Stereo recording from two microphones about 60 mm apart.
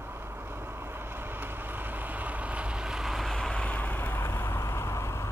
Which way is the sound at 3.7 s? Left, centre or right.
Left.